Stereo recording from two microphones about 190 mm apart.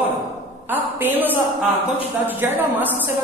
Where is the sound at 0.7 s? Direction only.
10° right (ahead or behind).